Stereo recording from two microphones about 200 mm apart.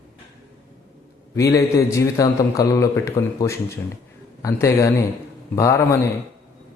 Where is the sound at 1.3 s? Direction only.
15° left (ahead or behind).